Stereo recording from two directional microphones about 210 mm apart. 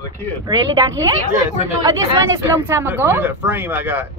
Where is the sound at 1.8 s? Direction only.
15° right (ahead or behind).